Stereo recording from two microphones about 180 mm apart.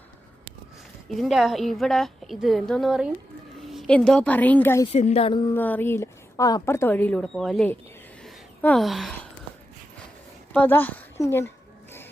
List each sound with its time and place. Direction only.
1.1 s a woman's voice: centre (ahead or behind)
4.9 s speech: 35° left (ahead or behind)
5.5 s a woman's voice: 10° left (ahead or behind)
8.2 s a sound: 5° left (ahead or behind)
10.5 s a woman's voice: 10° left (ahead or behind)